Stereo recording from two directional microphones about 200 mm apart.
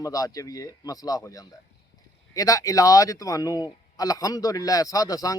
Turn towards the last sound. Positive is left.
turn(degrees=20)  # may be behind; listen again after turning